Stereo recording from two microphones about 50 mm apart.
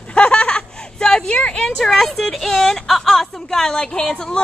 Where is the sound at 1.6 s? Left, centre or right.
Centre.